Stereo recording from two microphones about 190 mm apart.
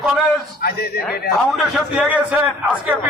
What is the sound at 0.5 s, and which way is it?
Speech, 55° left (ahead or behind).